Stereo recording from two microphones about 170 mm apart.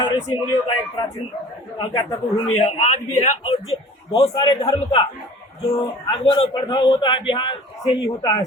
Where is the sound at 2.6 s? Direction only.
40° left (ahead or behind).